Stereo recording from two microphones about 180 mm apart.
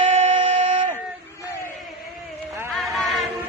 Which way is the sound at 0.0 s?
35° right (ahead or behind).